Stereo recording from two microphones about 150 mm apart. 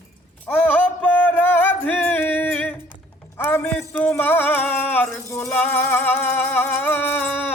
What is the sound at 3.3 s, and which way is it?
Speech, 15° left (ahead or behind).